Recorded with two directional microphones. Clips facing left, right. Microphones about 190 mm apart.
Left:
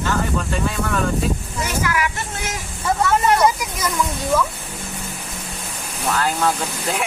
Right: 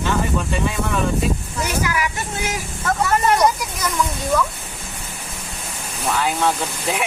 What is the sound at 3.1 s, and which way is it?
Speech, 5° left (ahead or behind).